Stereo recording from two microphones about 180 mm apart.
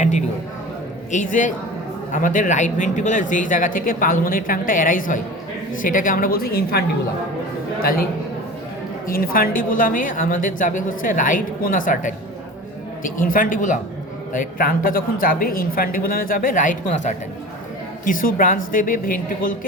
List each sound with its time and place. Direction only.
0.0 s a man's voice: 40° left (ahead or behind)
9.0 s a woman's voice: 55° left (ahead or behind)